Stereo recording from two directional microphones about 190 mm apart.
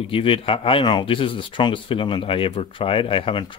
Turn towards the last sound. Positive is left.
turn(degrees=25)  # may be behind; listen again after turning